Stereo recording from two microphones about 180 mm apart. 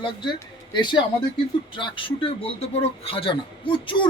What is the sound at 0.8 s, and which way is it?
A man's voice, 25° left (ahead or behind).